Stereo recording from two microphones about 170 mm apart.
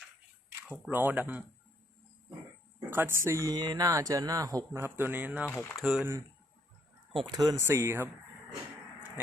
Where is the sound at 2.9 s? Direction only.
15° right (ahead or behind).